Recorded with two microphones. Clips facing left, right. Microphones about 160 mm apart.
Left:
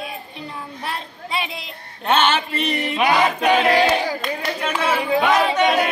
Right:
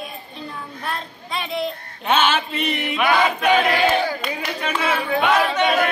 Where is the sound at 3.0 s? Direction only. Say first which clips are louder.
Even; 20° left (ahead or behind).